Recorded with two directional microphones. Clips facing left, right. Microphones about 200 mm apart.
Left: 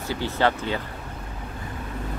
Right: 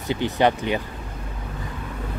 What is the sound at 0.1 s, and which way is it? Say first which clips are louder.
Speech: right 3 dB; 20° right (ahead or behind).